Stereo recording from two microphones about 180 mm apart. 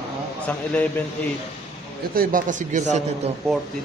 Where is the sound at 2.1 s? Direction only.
50° right (ahead or behind).